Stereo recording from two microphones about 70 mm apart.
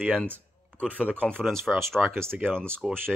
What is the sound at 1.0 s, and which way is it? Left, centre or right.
Speech, centre.